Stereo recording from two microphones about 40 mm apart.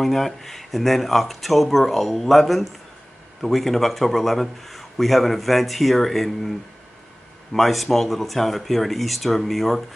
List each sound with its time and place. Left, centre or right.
0.0 s a man's voice: centre
7.5 s a man's voice: centre